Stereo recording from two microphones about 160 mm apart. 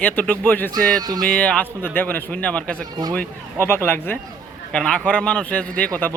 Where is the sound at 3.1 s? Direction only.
15° left (ahead or behind).